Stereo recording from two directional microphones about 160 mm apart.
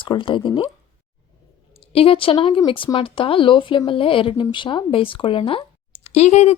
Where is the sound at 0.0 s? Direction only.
30° left (ahead or behind).